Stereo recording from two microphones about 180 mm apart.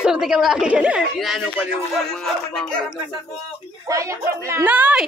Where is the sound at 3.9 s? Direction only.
15° right (ahead or behind).